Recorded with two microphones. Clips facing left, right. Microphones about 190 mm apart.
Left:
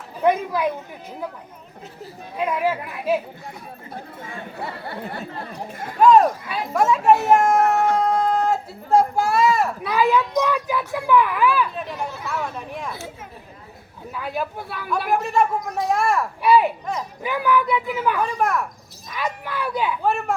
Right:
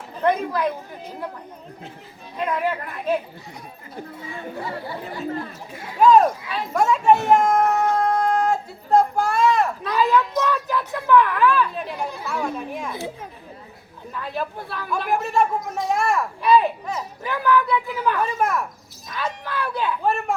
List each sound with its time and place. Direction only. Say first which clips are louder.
0.2 s speech: left 1 dB; 10° left (ahead or behind)
2.4 s speech: left 2 dB; 10° left (ahead or behind)
4.2 s speech: right 2 dB; 60° left (ahead or behind)
5.7 s speech: left 3 dB; 50° left (ahead or behind)
6.0 s speech: even; centre (ahead or behind)
14.1 s speech: left 1 dB; 10° left (ahead or behind)
18.2 s speech: left 1 dB; centre (ahead or behind)
19.1 s speech: even; 10° left (ahead or behind)